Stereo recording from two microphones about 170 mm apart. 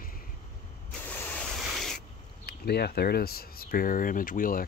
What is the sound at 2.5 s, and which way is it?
Speech, 70° left (ahead or behind).